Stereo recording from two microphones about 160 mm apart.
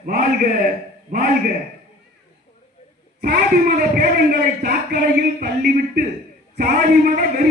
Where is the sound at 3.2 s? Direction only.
70° right (ahead or behind).